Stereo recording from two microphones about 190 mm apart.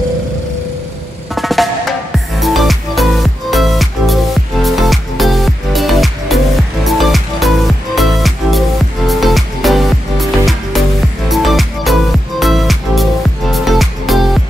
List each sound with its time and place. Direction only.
1.3 s drum: centre (ahead or behind)
2.4 s music: centre (ahead or behind)